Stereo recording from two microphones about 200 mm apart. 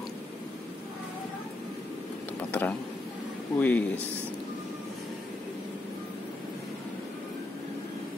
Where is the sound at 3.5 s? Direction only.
10° left (ahead or behind).